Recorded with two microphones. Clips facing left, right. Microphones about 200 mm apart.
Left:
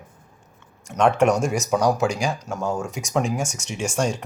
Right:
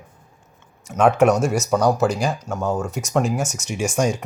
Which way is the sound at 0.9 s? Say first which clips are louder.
Right 2 dB; 5° right (ahead or behind).